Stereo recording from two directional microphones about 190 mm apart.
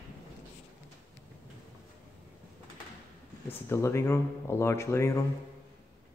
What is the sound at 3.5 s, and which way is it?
Speech, 15° left (ahead or behind).